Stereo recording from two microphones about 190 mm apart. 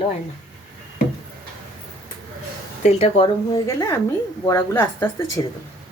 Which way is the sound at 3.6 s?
15° left (ahead or behind).